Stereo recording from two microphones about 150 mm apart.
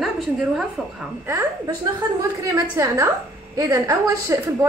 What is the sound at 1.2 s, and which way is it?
A woman's voice, 20° right (ahead or behind).